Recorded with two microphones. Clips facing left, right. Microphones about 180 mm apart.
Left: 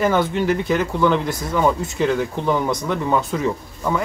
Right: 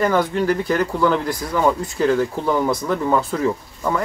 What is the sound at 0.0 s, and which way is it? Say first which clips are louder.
Speech: even; 5° left (ahead or behind).